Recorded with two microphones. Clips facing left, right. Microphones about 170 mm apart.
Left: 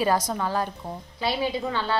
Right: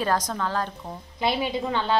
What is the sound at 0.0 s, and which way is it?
Speech, 10° left (ahead or behind).